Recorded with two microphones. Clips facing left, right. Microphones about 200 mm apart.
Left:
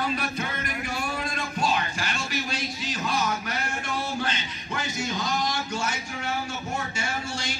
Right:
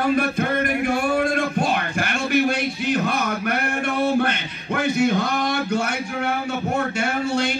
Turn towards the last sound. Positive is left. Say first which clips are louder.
# right 10 dB
turn(degrees=-60)  # may be behind; listen again after turning